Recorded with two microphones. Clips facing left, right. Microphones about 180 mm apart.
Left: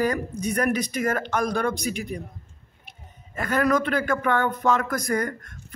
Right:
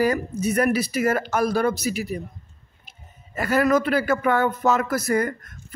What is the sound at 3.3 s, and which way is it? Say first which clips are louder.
Speech: right 3 dB; 10° right (ahead or behind).